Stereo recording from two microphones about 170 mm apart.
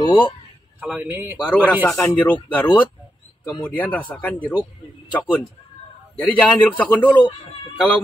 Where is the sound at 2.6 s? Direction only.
30° left (ahead or behind).